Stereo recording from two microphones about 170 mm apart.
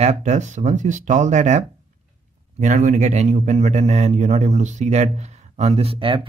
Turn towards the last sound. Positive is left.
turn(degrees=-35)  # may be behind; listen again after turning